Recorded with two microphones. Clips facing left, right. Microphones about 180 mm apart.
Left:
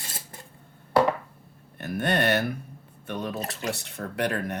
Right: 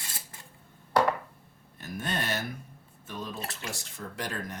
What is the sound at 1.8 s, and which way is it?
Speech, 65° left (ahead or behind).